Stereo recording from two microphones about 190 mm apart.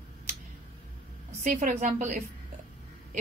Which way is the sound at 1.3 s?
40° right (ahead or behind).